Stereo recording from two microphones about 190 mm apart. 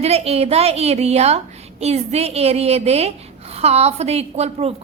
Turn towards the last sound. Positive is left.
turn(degrees=-35)  # may be behind; listen again after turning